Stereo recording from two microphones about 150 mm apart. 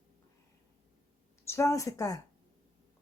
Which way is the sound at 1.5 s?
20° left (ahead or behind).